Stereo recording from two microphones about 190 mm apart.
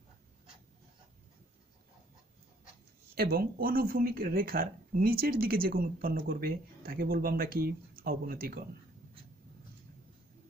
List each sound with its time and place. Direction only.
3.2 s speech: 50° right (ahead or behind)